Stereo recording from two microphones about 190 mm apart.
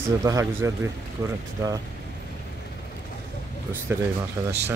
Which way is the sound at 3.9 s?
10° right (ahead or behind).